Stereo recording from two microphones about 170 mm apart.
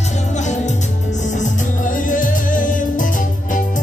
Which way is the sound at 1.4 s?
50° left (ahead or behind).